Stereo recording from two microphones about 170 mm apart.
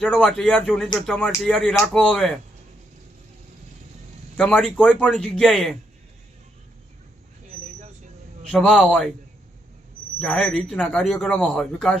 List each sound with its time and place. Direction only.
0.0 s a man's voice: centre (ahead or behind)
4.4 s a man's voice: 5° left (ahead or behind)
8.4 s a man's voice: 5° left (ahead or behind)
10.2 s a man's voice: centre (ahead or behind)